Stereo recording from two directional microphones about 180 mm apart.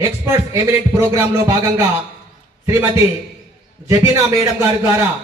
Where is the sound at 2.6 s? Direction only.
15° right (ahead or behind).